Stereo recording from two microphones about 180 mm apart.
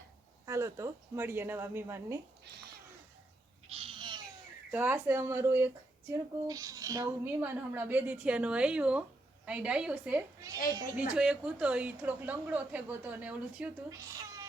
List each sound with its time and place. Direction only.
0.4 s speech: 15° right (ahead or behind)
3.7 s cat: 30° right (ahead or behind)
4.7 s a woman's voice: 10° right (ahead or behind)